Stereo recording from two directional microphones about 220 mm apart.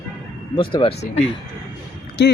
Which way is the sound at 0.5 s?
20° left (ahead or behind).